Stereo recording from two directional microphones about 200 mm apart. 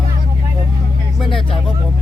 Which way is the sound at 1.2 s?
25° left (ahead or behind).